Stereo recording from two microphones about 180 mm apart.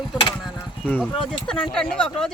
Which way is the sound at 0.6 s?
10° left (ahead or behind).